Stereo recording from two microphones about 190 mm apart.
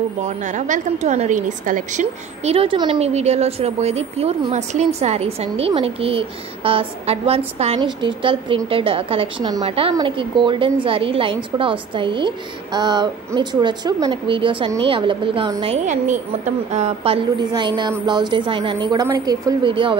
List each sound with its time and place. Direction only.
0.2 s a woman's voice: 40° right (ahead or behind)